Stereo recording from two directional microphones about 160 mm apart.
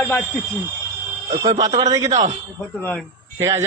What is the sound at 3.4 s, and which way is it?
Speech, 15° right (ahead or behind).